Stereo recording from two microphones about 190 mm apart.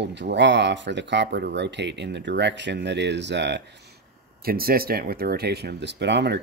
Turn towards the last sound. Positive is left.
turn(degrees=-65)  # may be behind; listen again after turning